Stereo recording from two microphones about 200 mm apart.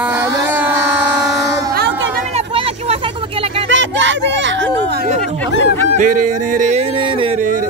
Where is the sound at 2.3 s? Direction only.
30° right (ahead or behind).